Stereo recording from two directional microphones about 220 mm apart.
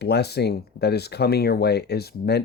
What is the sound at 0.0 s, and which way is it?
Speech, 50° left (ahead or behind).